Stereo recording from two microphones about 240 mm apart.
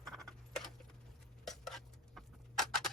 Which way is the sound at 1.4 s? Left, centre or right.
Centre.